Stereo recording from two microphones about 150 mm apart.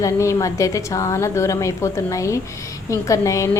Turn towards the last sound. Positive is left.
turn(degrees=20)  # may be behind; listen again after turning